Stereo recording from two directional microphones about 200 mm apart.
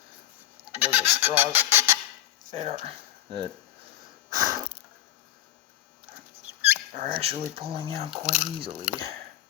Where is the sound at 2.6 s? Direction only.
30° right (ahead or behind).